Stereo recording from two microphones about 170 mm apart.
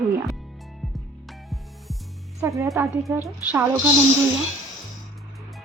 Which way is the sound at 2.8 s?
15° right (ahead or behind).